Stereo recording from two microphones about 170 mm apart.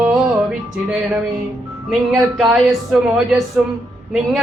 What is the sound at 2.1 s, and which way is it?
Speech, 5° right (ahead or behind).